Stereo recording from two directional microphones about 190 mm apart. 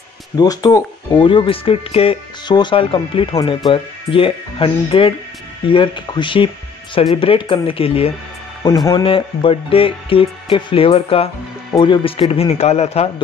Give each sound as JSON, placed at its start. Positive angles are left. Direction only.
{"t": 0.4, "sound": "a man's voice", "side_deg": 20}